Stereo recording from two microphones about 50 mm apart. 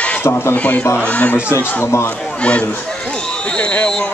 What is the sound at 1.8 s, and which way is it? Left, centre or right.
Speech, left.